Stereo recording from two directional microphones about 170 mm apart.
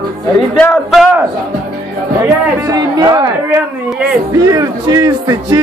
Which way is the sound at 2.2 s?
20° right (ahead or behind).